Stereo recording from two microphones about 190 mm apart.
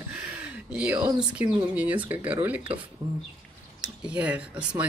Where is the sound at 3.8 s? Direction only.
5° right (ahead or behind).